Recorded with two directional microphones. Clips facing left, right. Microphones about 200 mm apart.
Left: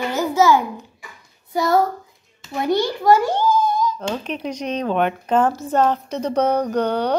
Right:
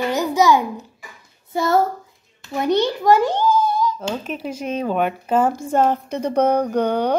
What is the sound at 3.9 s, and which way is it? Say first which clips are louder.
Speech: even; 5° right (ahead or behind).